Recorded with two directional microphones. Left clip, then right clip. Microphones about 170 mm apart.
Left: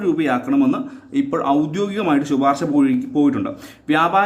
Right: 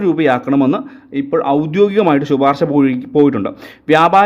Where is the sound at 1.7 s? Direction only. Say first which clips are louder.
Right 8 dB; 45° right (ahead or behind).